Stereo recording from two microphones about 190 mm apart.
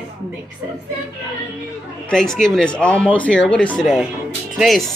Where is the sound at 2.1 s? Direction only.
5° left (ahead or behind).